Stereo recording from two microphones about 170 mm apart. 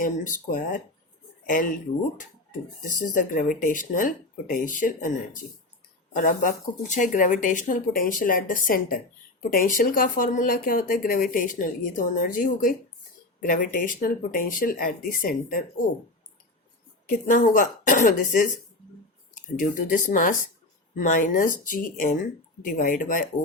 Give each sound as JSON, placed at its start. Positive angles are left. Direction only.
{"t": 0.0, "sound": "speech", "side_deg": 50}
{"t": 17.1, "sound": "speech", "side_deg": 50}